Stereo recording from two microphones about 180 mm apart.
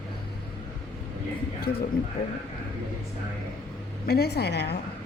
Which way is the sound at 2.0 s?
60° left (ahead or behind).